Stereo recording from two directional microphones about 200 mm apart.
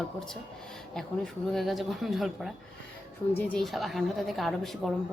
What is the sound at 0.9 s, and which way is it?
A woman's voice, centre (ahead or behind).